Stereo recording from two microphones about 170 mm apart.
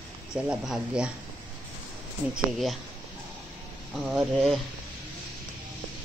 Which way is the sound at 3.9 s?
Centre (ahead or behind).